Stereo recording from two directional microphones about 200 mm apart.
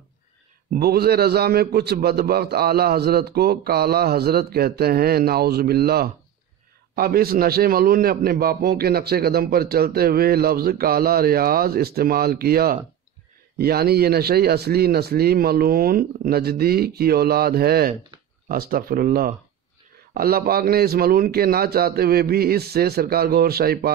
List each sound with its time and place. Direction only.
0.7 s a man's voice: 50° right (ahead or behind)